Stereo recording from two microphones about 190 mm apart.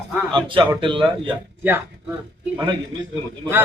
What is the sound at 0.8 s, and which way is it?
Speech, 25° right (ahead or behind).